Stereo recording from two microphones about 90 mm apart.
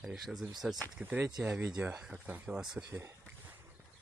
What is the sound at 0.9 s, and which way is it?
Speech, 20° right (ahead or behind).